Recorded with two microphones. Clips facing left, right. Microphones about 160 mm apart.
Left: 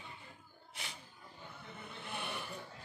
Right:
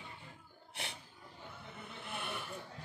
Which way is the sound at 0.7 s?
65° right (ahead or behind).